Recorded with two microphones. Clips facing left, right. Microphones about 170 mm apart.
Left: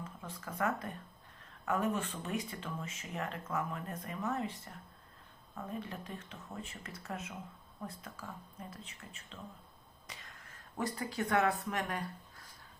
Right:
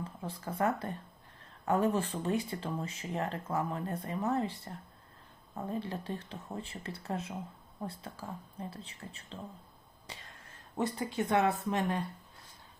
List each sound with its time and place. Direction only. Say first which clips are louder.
0.0 s speech: right 5 dB; 30° right (ahead or behind)